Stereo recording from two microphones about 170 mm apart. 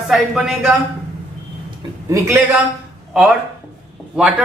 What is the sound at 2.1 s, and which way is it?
Speech, 15° right (ahead or behind).